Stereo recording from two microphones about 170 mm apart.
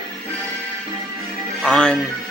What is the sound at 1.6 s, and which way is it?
Music, 5° left (ahead or behind).